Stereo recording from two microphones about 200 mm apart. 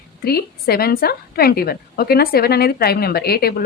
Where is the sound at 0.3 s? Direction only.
50° left (ahead or behind).